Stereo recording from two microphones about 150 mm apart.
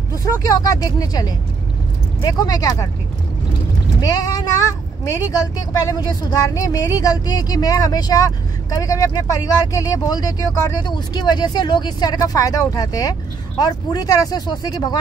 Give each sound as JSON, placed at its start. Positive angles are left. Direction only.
{"t": 0.1, "sound": "a woman's voice", "side_deg": 25}
{"t": 4.0, "sound": "a woman's voice", "side_deg": 25}